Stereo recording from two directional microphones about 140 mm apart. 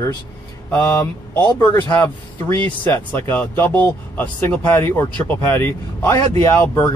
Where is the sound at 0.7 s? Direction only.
15° left (ahead or behind).